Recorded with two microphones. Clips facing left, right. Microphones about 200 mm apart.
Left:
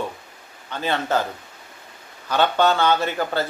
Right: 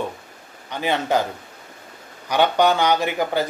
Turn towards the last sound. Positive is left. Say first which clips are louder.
# right 2 dB
turn(degrees=-15)  # may be behind; listen again after turning